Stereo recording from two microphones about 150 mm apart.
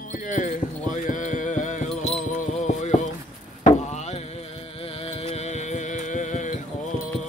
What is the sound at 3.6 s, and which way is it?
Chop, 50° left (ahead or behind).